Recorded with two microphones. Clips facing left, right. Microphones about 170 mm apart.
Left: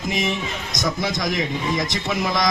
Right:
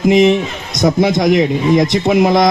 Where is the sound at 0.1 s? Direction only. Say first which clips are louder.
Right 14 dB; 55° right (ahead or behind).